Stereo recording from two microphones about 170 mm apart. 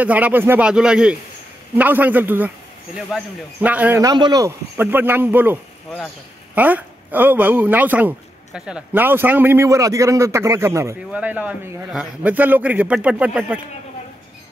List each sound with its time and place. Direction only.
0.0 s a man's voice: 10° right (ahead or behind)
3.6 s a man's voice: 10° right (ahead or behind)
4.0 s a man's voice: 25° right (ahead or behind)